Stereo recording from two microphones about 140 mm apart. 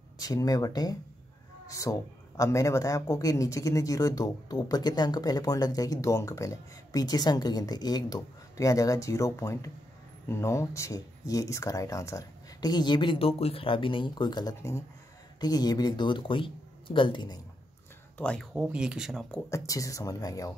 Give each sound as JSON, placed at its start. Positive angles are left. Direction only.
{"t": 0.2, "sound": "speech", "side_deg": 25}
{"t": 18.1, "sound": "speech", "side_deg": 10}
{"t": 18.5, "sound": "speech", "side_deg": -10}
{"t": 19.5, "sound": "speech", "side_deg": 25}